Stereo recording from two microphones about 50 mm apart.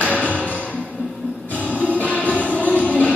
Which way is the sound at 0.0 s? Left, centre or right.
Left.